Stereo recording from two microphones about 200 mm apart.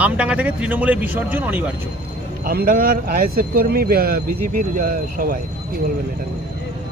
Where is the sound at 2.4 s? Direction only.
45° right (ahead or behind).